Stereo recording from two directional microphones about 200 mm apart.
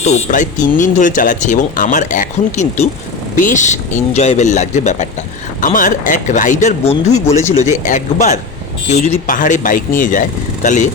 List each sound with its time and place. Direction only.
0.0 s speech: 35° left (ahead or behind)